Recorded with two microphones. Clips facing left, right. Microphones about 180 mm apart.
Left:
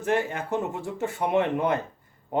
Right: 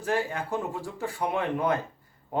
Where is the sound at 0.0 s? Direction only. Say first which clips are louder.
Left 3 dB; 20° left (ahead or behind).